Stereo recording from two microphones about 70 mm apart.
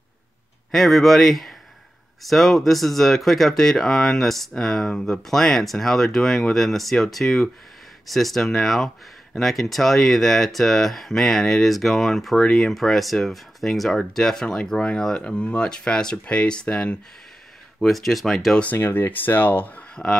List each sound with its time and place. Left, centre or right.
0.7 s a man's voice: centre
17.7 s speech: centre
18.8 s speech: left